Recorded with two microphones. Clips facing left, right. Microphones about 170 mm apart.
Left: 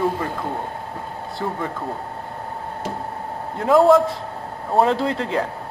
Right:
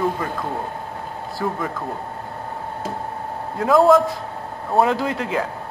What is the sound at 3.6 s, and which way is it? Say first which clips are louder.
A man's voice: even; 30° left (ahead or behind).